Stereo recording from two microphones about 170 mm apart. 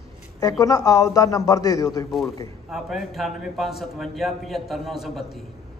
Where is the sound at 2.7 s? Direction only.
Centre (ahead or behind).